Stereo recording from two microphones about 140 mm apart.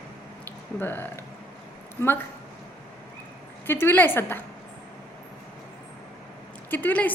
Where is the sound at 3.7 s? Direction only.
15° left (ahead or behind).